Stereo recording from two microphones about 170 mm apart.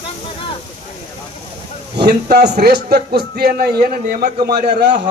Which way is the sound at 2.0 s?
70° right (ahead or behind).